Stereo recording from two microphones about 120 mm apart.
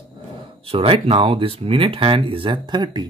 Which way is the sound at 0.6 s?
50° right (ahead or behind).